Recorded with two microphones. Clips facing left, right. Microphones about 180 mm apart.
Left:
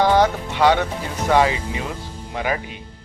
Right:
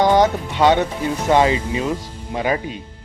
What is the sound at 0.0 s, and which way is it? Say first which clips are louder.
Speech: right 2 dB; 20° right (ahead or behind).